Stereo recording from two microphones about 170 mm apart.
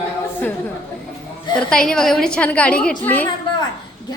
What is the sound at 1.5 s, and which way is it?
A woman's voice, 5° left (ahead or behind).